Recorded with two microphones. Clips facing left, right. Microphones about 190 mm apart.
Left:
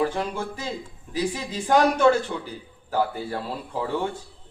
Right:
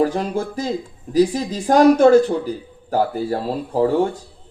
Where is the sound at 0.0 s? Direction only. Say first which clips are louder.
Right 6 dB; 40° right (ahead or behind).